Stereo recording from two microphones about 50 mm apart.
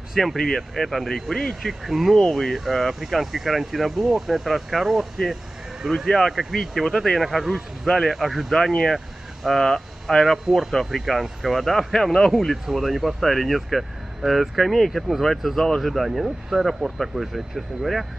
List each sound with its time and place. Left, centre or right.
0.1 s speech: centre
0.4 s speech: centre
1.3 s speech: centre
1.6 s speech: centre
6.0 s speech: centre
8.5 s speech: centre
15.8 s speech: centre